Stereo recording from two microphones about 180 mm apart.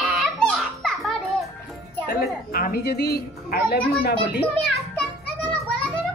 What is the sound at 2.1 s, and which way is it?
A woman's voice, 55° left (ahead or behind).